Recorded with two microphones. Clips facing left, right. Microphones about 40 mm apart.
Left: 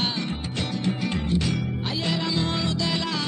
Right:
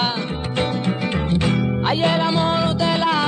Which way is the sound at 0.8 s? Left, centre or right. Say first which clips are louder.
Right 4 dB; right.